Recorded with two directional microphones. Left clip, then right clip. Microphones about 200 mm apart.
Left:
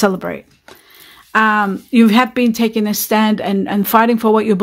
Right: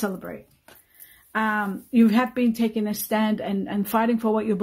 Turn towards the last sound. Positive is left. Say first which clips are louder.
# left 10 dB
turn(degrees=35)  # may be behind; listen again after turning